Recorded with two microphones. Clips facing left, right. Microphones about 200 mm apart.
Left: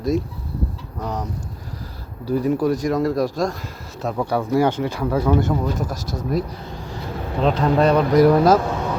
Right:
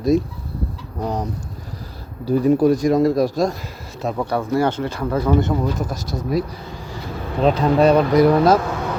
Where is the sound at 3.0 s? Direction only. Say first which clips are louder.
Right 3 dB; 10° right (ahead or behind).